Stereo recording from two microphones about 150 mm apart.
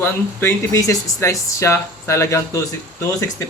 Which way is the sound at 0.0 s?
15° left (ahead or behind).